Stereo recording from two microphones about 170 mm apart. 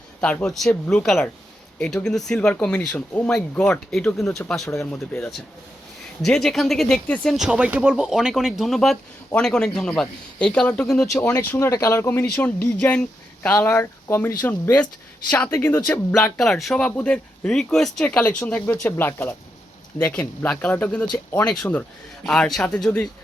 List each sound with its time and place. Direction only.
0.2 s speech: 5° left (ahead or behind)
4.7 s speech: 15° left (ahead or behind)
6.2 s speech: 5° left (ahead or behind)
11.5 s speech: 20° left (ahead or behind)
16.4 s speech: centre (ahead or behind)